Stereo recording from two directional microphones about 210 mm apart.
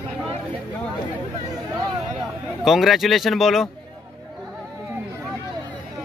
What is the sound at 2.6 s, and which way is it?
Speech, centre (ahead or behind).